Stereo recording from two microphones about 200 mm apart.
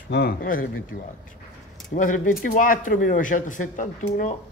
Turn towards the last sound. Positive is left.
turn(degrees=35)  # may be behind; listen again after turning